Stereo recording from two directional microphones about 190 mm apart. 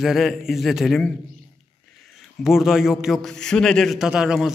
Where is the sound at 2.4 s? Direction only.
Centre (ahead or behind).